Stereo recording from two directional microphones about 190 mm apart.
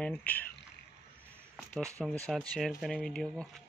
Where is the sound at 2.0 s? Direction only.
5° left (ahead or behind).